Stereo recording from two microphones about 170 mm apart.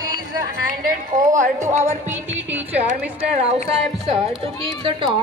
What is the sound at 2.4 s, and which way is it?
Speech, 10° right (ahead or behind).